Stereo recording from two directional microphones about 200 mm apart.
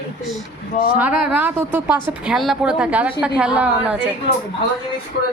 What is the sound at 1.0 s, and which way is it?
A woman's voice, 10° right (ahead or behind).